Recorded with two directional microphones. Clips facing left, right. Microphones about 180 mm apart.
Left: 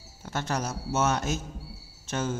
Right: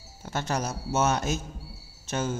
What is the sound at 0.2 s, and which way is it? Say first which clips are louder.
Speech: right 1 dB; 15° right (ahead or behind).